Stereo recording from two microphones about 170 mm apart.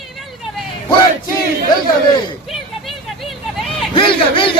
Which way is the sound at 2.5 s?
Centre (ahead or behind).